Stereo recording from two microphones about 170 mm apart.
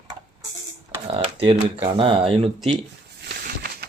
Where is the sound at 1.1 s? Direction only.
30° right (ahead or behind).